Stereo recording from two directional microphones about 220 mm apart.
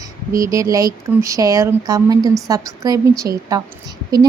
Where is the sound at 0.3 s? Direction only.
15° right (ahead or behind).